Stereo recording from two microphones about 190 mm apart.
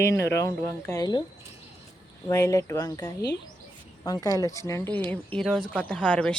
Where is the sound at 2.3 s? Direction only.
15° left (ahead or behind).